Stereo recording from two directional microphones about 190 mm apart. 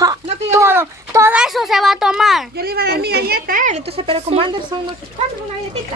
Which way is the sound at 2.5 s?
55° right (ahead or behind).